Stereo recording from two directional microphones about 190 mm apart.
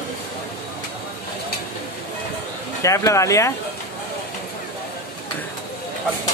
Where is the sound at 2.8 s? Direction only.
15° left (ahead or behind).